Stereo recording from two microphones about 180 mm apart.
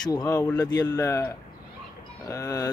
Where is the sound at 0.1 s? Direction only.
20° left (ahead or behind).